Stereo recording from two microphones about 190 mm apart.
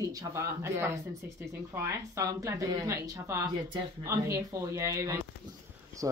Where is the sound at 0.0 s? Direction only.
15° right (ahead or behind).